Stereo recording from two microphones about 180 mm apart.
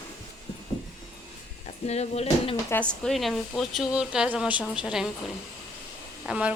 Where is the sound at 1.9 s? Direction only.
35° left (ahead or behind).